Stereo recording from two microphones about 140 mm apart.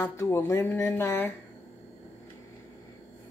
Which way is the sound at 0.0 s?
20° left (ahead or behind).